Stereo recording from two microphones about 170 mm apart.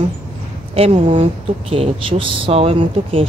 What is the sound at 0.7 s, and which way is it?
Speech, 35° right (ahead or behind).